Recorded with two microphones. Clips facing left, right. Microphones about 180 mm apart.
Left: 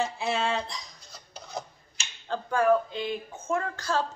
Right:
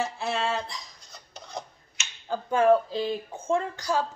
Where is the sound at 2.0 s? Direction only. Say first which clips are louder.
Right 1 dB; 30° left (ahead or behind).